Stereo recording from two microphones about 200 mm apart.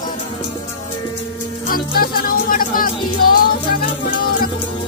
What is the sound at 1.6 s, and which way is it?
Music, 45° left (ahead or behind).